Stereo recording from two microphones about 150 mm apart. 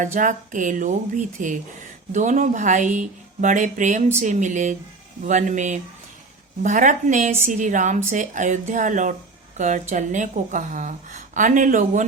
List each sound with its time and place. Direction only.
0.0 s speech: 60° right (ahead or behind)